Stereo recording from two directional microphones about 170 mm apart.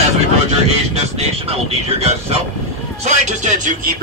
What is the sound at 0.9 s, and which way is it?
Speech, 40° right (ahead or behind).